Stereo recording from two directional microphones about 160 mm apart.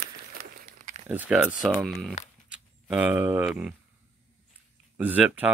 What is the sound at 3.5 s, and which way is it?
Speech, 5° right (ahead or behind).